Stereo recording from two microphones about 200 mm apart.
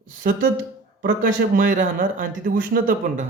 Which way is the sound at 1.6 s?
45° right (ahead or behind).